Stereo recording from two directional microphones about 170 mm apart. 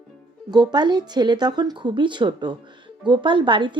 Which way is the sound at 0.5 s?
25° right (ahead or behind).